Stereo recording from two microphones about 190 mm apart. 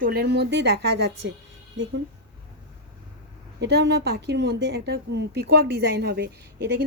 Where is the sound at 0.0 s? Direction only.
55° right (ahead or behind).